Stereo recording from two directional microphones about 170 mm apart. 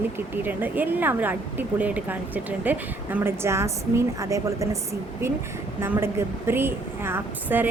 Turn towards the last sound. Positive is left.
turn(degrees=-10)  # may be behind; listen again after turning